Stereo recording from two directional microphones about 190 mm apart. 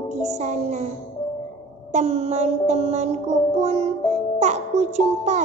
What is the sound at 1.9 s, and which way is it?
Music, 35° right (ahead or behind).